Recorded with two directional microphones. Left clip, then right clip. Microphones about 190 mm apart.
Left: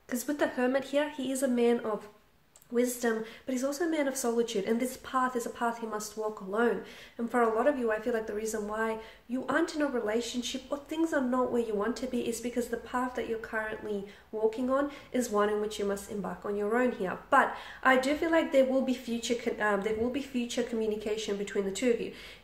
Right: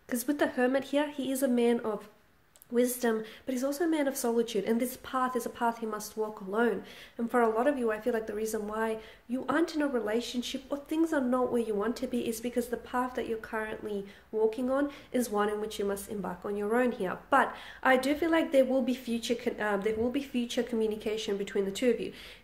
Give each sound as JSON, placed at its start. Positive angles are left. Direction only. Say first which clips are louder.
{"t": 0.1, "sound": "speech", "louder": "right 1 dB", "side_deg": -35}